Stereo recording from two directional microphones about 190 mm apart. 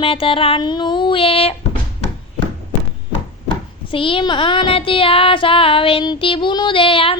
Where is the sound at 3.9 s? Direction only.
25° left (ahead or behind).